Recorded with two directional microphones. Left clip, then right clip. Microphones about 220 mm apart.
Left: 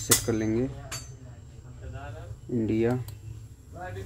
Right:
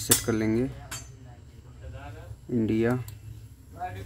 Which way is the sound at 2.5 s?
15° right (ahead or behind).